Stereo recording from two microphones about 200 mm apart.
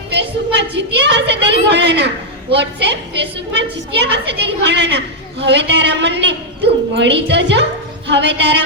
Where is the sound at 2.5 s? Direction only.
60° right (ahead or behind).